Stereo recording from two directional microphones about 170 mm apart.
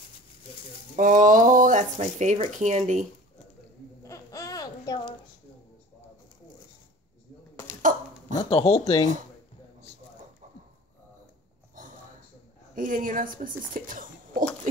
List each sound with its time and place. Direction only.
0.9 s speech: 50° right (ahead or behind)
4.0 s babbling: 20° left (ahead or behind)
8.4 s speech: 35° left (ahead or behind)
12.7 s speech: 50° right (ahead or behind)